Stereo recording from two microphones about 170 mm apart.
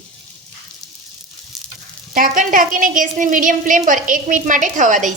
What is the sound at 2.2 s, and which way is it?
A woman's voice, 55° right (ahead or behind).